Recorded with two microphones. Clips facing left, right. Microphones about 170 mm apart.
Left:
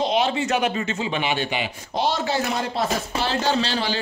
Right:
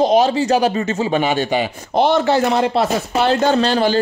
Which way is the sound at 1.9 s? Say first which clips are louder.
Right 8 dB; 60° right (ahead or behind).